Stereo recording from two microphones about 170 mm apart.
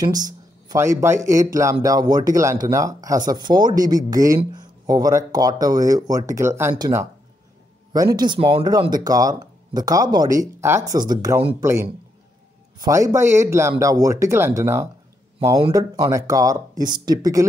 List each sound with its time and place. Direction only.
0.0 s speech: 25° right (ahead or behind)
8.4 s speech: 35° right (ahead or behind)
8.6 s speech: 25° right (ahead or behind)
12.7 s speech: 20° right (ahead or behind)